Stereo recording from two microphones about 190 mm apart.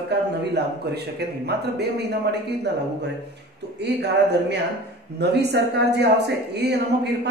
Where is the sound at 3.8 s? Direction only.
60° right (ahead or behind).